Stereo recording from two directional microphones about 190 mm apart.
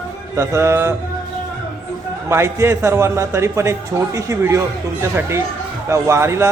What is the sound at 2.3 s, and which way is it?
A man's voice, 15° right (ahead or behind).